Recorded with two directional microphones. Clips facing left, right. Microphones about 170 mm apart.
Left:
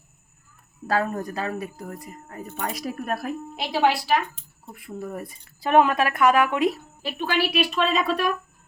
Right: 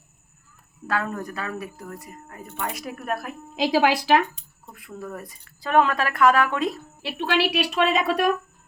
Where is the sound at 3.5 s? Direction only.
90° right.